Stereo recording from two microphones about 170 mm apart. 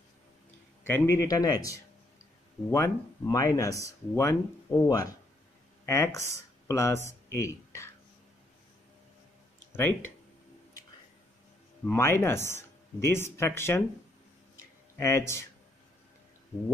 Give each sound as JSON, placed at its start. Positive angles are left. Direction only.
{"t": 0.8, "sound": "a man's voice", "side_deg": 15}
{"t": 9.7, "sound": "speech", "side_deg": 15}
{"t": 11.8, "sound": "speech", "side_deg": 15}
{"t": 15.0, "sound": "speech", "side_deg": 15}